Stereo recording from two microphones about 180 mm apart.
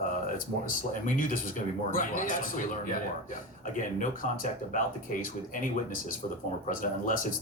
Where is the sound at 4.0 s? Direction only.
45° left (ahead or behind).